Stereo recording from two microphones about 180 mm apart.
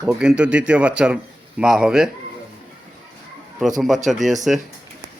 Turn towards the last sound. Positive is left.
turn(degrees=0)  # may be behind; listen again after turning